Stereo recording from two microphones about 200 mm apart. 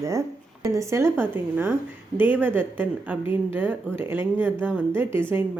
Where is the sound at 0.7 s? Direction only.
15° right (ahead or behind).